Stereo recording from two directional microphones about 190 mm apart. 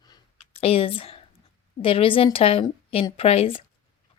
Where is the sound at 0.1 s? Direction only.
30° left (ahead or behind).